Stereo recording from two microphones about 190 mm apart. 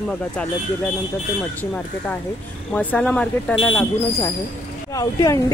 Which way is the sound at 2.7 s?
5° left (ahead or behind).